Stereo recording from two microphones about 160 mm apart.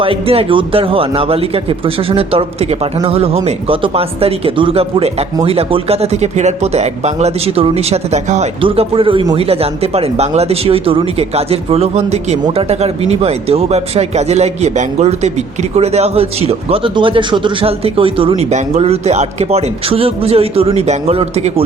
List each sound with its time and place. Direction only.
0.0 s a man's voice: 35° right (ahead or behind)